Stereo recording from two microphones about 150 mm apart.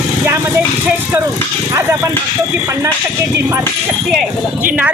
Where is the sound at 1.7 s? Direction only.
20° right (ahead or behind).